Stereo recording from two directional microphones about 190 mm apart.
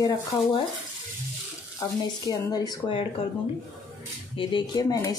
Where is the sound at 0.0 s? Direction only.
25° left (ahead or behind).